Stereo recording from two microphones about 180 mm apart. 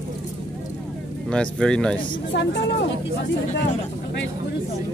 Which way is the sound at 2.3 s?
80° left.